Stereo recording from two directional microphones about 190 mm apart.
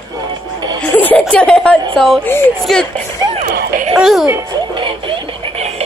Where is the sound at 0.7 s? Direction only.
10° left (ahead or behind).